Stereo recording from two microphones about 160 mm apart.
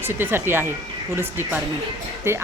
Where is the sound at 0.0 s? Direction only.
15° right (ahead or behind).